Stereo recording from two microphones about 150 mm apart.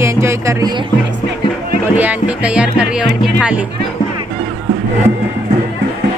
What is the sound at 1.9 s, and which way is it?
Speech, 10° right (ahead or behind).